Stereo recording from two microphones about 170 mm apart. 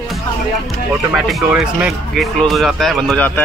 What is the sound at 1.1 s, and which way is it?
Speech, 5° right (ahead or behind).